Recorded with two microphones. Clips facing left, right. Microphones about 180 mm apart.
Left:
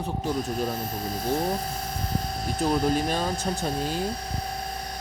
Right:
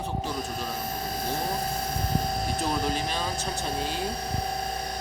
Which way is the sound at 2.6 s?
45° left (ahead or behind).